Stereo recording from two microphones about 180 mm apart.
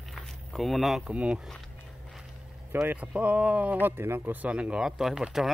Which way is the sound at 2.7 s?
10° right (ahead or behind).